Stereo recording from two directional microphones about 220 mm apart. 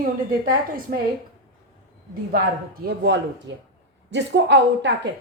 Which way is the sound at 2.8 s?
50° right (ahead or behind).